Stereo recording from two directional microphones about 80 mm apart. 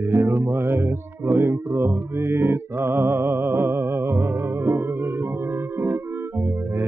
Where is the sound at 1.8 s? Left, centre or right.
Right.